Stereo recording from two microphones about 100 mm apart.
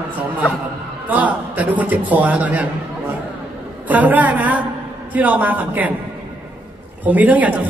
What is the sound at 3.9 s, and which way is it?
Speech, 15° right (ahead or behind).